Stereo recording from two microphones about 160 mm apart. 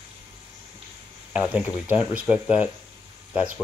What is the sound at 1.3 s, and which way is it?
Speech, 5° right (ahead or behind).